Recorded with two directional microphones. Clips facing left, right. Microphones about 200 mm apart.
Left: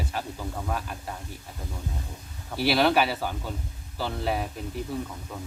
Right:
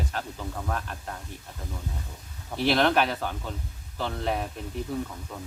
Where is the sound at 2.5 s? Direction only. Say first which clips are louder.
Left 1 dB; 5° left (ahead or behind).